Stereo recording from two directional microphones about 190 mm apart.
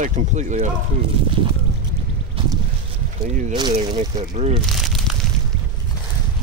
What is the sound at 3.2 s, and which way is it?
Speech, 40° right (ahead or behind).